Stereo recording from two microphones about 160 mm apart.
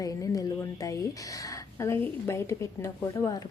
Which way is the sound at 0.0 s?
20° left (ahead or behind).